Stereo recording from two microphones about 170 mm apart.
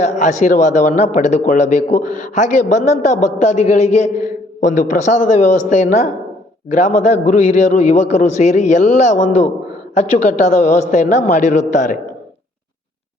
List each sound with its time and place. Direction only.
0.2 s a man's voice: 45° left (ahead or behind)